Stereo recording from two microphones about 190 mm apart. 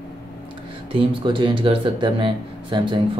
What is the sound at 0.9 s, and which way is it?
Speech, 25° right (ahead or behind).